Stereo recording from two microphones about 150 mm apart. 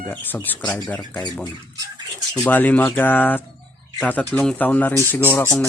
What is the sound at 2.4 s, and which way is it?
Speech, 10° left (ahead or behind).